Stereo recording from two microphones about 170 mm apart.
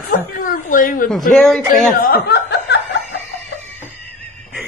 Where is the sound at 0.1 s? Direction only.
55° left (ahead or behind).